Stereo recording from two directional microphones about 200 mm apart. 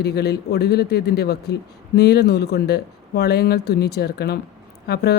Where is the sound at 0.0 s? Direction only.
55° left (ahead or behind).